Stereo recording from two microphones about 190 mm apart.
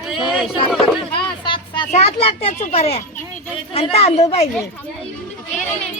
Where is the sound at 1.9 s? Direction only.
35° left (ahead or behind).